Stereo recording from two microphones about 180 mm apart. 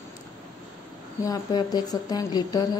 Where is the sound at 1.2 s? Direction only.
20° left (ahead or behind).